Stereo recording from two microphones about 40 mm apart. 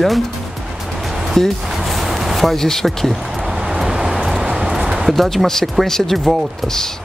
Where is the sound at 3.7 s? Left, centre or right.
Centre.